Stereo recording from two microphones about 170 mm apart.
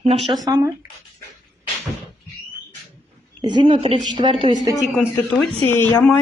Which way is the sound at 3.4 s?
25° right (ahead or behind).